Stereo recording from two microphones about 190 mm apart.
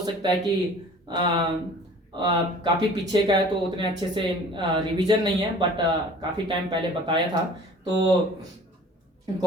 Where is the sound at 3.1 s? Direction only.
25° right (ahead or behind).